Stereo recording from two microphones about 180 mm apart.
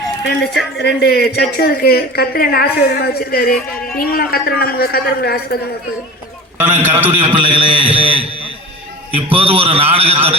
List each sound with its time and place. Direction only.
0.3 s speech: 70° left (ahead or behind)
6.6 s a man's voice: 10° right (ahead or behind)
7.3 s a man's voice: 30° right (ahead or behind)
7.9 s a man's voice: 10° right (ahead or behind)
9.1 s a man's voice: 30° right (ahead or behind)